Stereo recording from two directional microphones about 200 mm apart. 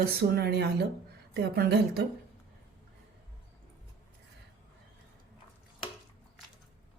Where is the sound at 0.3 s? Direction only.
55° right (ahead or behind).